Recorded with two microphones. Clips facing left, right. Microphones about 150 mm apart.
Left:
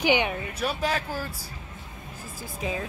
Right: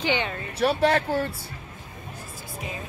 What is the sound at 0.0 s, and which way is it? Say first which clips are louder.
Speech: left 3 dB; 15° left (ahead or behind).